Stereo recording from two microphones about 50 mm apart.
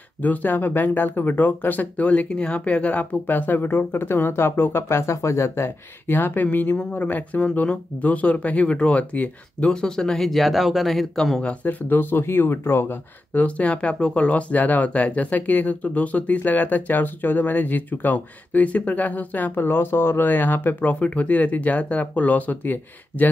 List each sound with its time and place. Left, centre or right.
0.2 s speech: left
4.8 s speech: left
6.0 s speech: left
9.6 s speech: centre
11.6 s speech: left
13.3 s speech: left